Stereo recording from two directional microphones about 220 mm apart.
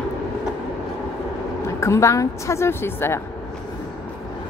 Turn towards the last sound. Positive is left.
turn(degrees=10)  # may be behind; listen again after turning